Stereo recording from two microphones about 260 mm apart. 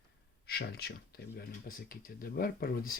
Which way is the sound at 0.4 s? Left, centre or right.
Left.